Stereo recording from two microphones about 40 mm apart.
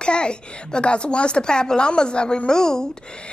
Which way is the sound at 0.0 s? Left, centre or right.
Left.